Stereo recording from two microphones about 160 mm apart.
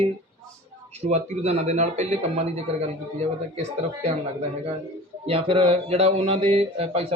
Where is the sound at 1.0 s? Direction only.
40° right (ahead or behind).